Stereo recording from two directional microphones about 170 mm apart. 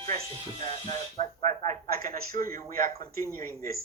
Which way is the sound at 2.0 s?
55° right (ahead or behind).